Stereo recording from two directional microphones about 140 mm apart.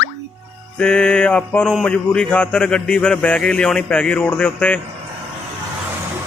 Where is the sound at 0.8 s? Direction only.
5° left (ahead or behind).